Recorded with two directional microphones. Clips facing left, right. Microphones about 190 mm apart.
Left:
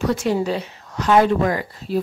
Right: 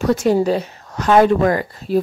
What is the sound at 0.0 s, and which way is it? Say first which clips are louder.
A woman's voice: right 5 dB; 45° right (ahead or behind).